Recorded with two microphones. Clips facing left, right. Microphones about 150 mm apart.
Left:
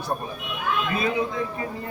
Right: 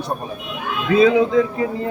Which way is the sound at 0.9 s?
90° right.